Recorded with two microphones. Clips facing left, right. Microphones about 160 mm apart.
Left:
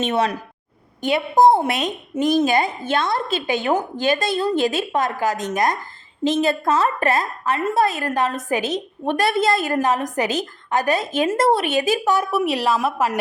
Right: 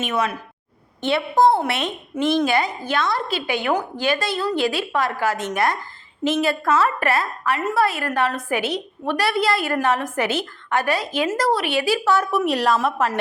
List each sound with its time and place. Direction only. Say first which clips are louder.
0.0 s a woman's voice: left 3 dB; 30° left (ahead or behind)
1.0 s a woman's voice: left 2 dB; 15° left (ahead or behind)
10.2 s a woman's voice: even; 40° left (ahead or behind)
10.8 s a woman's voice: left 4 dB; 20° left (ahead or behind); by 13.1 s 5° left (ahead or behind)